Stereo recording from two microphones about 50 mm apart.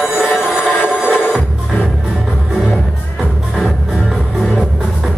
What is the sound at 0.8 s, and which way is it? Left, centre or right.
Music, centre.